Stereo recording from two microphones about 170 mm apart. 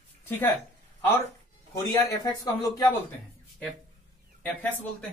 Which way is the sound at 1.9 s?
20° left (ahead or behind).